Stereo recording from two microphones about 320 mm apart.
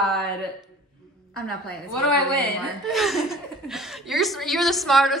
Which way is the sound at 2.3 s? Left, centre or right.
Centre.